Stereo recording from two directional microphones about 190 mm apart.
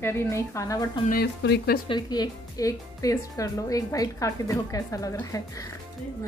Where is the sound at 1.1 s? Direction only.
55° left (ahead or behind).